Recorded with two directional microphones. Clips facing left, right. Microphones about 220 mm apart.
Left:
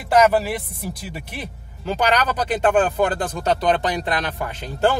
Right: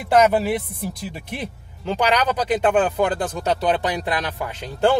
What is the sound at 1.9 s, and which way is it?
Speech, 15° right (ahead or behind).